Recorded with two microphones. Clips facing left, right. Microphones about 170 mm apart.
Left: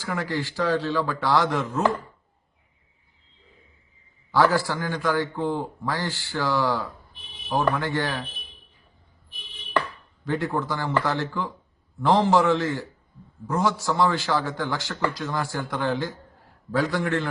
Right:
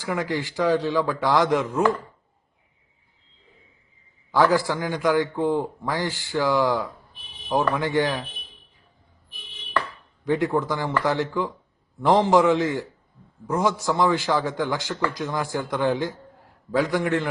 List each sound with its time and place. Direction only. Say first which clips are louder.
0.0 s a man's voice: right 2 dB; 20° right (ahead or behind)
4.3 s a man's voice: right 1 dB; 15° right (ahead or behind)
10.2 s a man's voice: right 4 dB; 15° right (ahead or behind)